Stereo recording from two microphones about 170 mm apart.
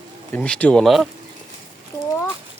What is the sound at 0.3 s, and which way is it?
Speech, 5° left (ahead or behind).